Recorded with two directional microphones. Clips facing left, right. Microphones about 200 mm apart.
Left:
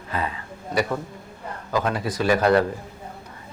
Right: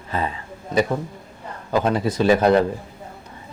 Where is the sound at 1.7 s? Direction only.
25° right (ahead or behind).